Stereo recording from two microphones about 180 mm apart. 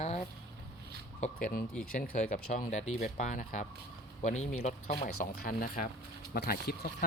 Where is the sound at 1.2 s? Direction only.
45° left (ahead or behind).